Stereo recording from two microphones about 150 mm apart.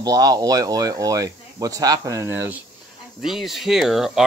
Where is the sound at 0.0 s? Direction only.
25° right (ahead or behind).